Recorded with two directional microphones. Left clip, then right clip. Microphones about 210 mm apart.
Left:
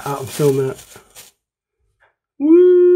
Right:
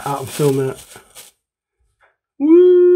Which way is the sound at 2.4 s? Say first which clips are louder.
Even; 5° right (ahead or behind).